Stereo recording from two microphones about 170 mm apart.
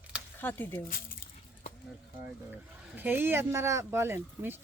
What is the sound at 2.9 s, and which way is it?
Speech, 10° right (ahead or behind).